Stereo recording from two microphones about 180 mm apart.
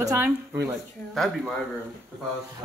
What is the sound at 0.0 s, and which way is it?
Speech, 15° right (ahead or behind).